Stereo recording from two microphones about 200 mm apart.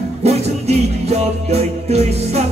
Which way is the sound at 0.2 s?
30° right (ahead or behind).